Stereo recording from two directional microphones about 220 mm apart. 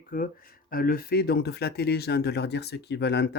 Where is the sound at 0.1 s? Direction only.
40° left (ahead or behind).